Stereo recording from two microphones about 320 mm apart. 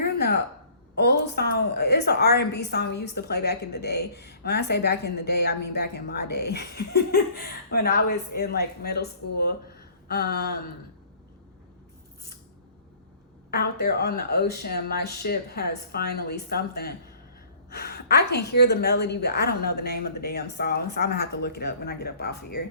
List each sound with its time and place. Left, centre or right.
0.0 s a sound: left
0.9 s a woman's voice: left
13.5 s a woman's voice: left